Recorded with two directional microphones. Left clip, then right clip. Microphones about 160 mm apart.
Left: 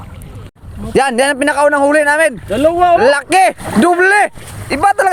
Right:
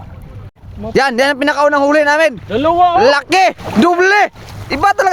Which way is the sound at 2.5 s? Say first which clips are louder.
Left 1 dB; 20° right (ahead or behind).